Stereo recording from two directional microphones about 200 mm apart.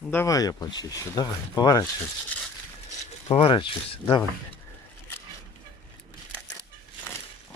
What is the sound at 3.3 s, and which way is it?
Speech, 25° left (ahead or behind).